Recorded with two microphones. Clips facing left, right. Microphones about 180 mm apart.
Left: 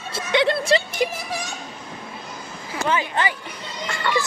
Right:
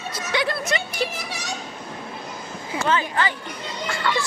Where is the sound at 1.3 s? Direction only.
80° right.